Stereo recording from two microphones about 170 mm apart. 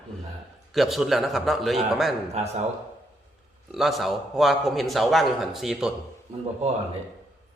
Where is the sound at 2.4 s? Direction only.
40° right (ahead or behind).